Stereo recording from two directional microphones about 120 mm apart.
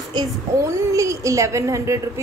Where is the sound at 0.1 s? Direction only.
35° right (ahead or behind).